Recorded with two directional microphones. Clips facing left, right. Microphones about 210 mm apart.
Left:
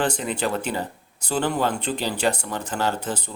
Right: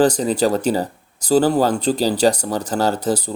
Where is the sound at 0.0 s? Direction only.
40° right (ahead or behind).